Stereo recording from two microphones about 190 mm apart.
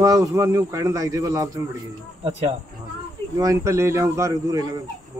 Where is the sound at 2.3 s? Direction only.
35° right (ahead or behind).